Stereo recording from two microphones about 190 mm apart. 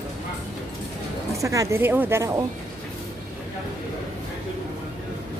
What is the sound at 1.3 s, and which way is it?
Speech, 15° right (ahead or behind).